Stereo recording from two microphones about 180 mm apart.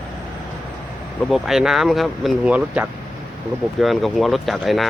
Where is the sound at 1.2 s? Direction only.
Centre (ahead or behind).